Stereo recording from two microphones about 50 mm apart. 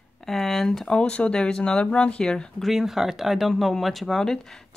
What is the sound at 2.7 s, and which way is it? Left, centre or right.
Speech, centre.